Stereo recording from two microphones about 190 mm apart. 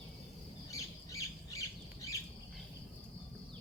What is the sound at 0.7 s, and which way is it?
Squawk, 15° left (ahead or behind).